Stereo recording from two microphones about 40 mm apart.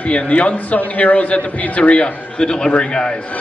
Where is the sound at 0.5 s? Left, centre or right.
Left.